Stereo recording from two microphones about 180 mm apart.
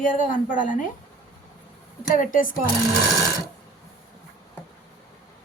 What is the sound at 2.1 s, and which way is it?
Speech, 50° left (ahead or behind).